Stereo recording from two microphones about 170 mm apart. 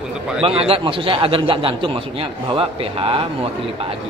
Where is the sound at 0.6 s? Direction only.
35° right (ahead or behind).